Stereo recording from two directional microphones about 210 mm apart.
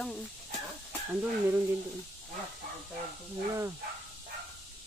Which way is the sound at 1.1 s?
5° right (ahead or behind).